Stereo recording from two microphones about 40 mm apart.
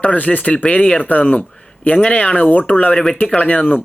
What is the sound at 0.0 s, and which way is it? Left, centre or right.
A man's voice, left.